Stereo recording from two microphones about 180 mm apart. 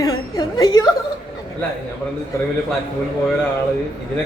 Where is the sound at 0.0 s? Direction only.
20° left (ahead or behind).